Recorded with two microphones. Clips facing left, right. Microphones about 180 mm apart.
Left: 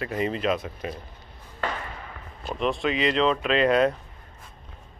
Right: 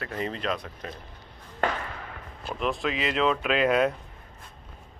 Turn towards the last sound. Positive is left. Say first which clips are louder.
# left 2 dB
turn(degrees=-5)  # may be behind; listen again after turning